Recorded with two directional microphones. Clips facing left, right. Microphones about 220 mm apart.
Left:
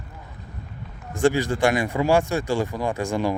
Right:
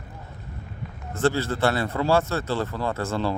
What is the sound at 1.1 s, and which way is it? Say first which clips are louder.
Speech: left 3 dB; 15° left (ahead or behind).